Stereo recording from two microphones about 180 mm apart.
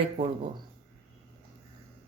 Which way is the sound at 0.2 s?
30° right (ahead or behind).